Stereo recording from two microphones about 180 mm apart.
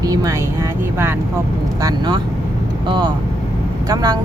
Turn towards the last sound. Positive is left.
turn(degrees=-20)  # may be behind; listen again after turning